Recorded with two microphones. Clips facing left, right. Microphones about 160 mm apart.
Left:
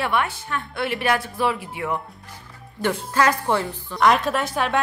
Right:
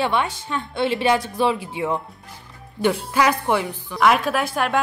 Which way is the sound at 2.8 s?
15° right (ahead or behind).